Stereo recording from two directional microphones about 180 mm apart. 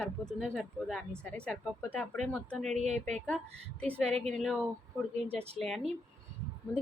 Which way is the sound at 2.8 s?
35° right (ahead or behind).